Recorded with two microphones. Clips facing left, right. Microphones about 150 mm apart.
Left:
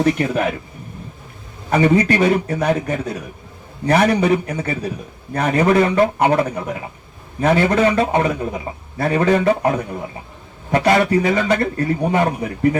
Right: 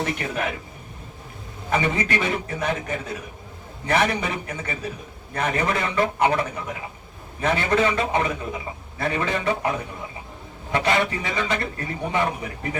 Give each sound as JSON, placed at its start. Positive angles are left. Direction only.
{"t": 0.0, "sound": "a man's voice", "side_deg": 35}
{"t": 1.7, "sound": "a man's voice", "side_deg": 40}